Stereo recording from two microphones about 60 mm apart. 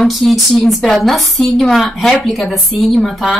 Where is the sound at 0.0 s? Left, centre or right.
Centre.